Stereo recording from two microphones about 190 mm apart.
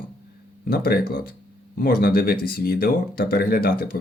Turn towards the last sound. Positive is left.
turn(degrees=55)  # may be behind; listen again after turning